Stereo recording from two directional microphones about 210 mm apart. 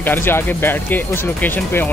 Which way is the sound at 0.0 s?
10° left (ahead or behind).